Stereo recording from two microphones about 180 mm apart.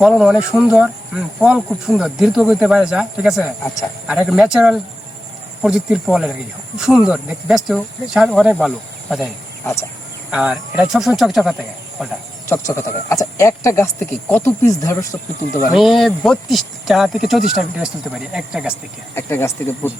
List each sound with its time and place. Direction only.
0.0 s speech: 5° right (ahead or behind)
10.3 s speech: 5° right (ahead or behind)
12.5 s speech: 15° left (ahead or behind)
15.7 s speech: centre (ahead or behind)
19.1 s speech: 15° left (ahead or behind)